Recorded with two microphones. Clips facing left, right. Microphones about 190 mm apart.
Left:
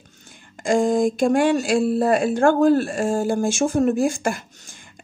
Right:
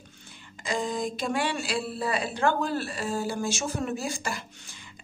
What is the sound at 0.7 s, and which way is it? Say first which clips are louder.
Speech: left 11 dB; 50° left (ahead or behind).